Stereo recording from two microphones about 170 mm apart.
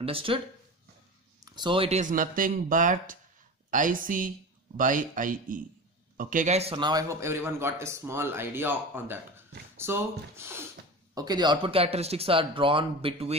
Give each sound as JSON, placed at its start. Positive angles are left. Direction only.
{"t": 0.0, "sound": "speech", "side_deg": -30}
{"t": 1.4, "sound": "a man's voice", "side_deg": -25}